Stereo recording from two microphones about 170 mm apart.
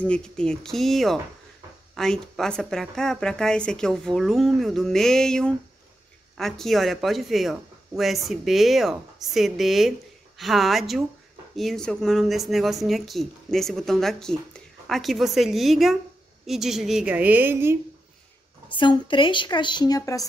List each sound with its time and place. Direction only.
0.0 s a woman's voice: 5° left (ahead or behind); by 17.7 s 15° right (ahead or behind)
18.7 s a woman's voice: 30° left (ahead or behind)